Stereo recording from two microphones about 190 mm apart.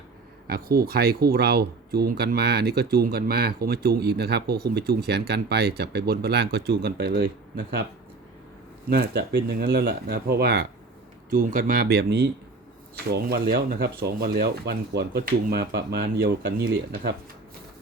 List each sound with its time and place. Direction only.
0.4 s speech: 50° right (ahead or behind)
8.9 s speech: 55° right (ahead or behind)